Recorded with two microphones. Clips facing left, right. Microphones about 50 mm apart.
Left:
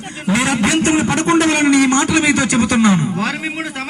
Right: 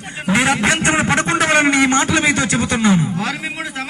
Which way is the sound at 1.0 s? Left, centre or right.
Right.